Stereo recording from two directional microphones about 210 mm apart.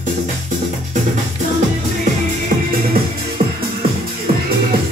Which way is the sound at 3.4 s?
30° right (ahead or behind).